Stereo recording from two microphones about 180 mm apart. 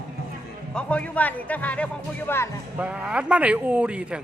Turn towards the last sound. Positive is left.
turn(degrees=-5)  # may be behind; listen again after turning